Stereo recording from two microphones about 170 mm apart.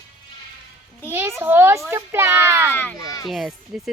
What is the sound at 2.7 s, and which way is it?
Speech, 10° left (ahead or behind).